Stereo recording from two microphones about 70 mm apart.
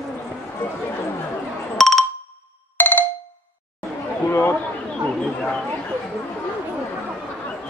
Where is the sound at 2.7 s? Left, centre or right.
Left.